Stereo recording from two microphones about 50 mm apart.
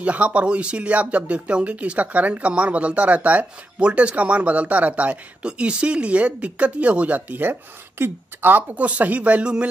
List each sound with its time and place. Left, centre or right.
0.0 s a woman's voice: right
8.7 s speech: right